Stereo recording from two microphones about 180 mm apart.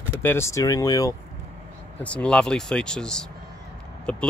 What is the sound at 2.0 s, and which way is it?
Speech, 5° left (ahead or behind).